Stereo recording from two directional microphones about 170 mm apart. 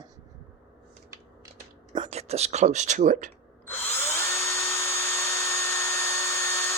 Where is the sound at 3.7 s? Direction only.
10° left (ahead or behind).